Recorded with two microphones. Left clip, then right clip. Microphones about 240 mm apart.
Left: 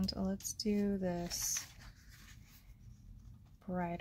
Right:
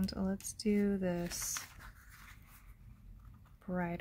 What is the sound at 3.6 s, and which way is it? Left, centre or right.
Speech, centre.